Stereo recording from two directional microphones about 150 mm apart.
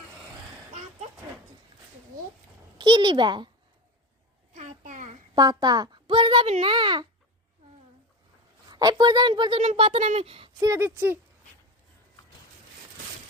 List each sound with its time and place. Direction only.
2.7 s a child's voice: 30° right (ahead or behind)
4.5 s a sound: 55° right (ahead or behind)
5.3 s a child's voice: 25° right (ahead or behind)
8.7 s a child's voice: 25° right (ahead or behind)
10.6 s speech: 20° right (ahead or behind)